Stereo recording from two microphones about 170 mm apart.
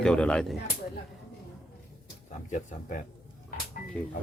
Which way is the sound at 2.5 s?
50° left (ahead or behind).